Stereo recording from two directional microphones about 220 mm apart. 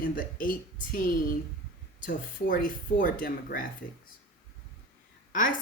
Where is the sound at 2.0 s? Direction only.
40° left (ahead or behind).